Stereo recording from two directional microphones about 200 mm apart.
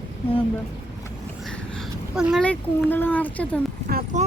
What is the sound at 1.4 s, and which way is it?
Speech, 5° left (ahead or behind).